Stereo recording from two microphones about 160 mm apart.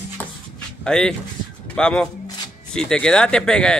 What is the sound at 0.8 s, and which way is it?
Speech, 5° left (ahead or behind).